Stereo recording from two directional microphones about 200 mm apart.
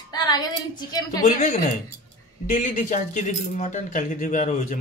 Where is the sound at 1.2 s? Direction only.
35° left (ahead or behind).